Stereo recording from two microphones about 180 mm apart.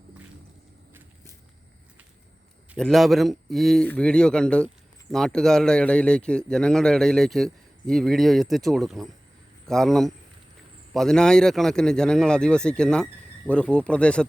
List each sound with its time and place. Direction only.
2.7 s speech: centre (ahead or behind)